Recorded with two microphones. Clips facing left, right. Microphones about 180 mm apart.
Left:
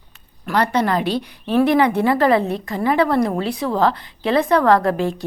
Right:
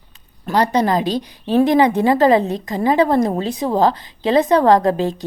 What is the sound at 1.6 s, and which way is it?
A woman's voice, 20° right (ahead or behind).